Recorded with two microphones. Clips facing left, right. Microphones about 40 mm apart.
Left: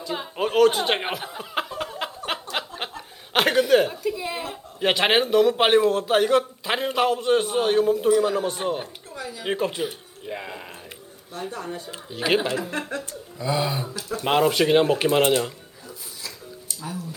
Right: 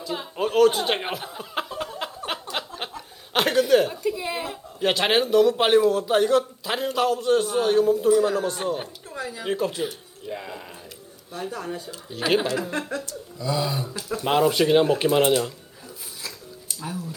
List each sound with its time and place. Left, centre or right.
0.0 s speech: centre
2.0 s a sound: centre
3.3 s chuckle: centre
4.0 s a woman's voice: centre
4.8 s speech: centre
5.8 s a man's voice: left
9.1 s a sound: right
9.4 s a man's voice: left
10.2 s a sound: left
11.3 s speech: centre
12.9 s a man's voice: left